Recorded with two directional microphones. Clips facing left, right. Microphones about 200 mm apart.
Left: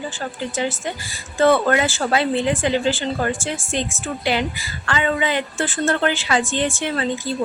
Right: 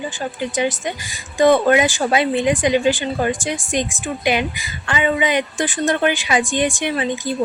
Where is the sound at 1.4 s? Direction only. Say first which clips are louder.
Right 3 dB; 15° right (ahead or behind).